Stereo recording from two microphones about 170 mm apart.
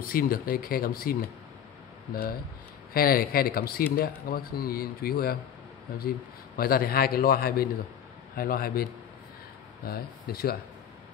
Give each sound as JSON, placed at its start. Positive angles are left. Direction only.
{"t": 0.0, "sound": "a man's voice", "side_deg": 60}
{"t": 2.9, "sound": "a man's voice", "side_deg": 60}
{"t": 9.8, "sound": "a man's voice", "side_deg": 60}